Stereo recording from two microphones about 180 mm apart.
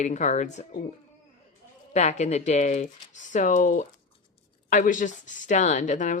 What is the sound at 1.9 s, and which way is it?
Speech, 40° left (ahead or behind).